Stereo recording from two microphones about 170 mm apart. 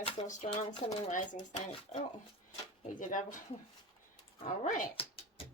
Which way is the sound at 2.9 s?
50° left (ahead or behind).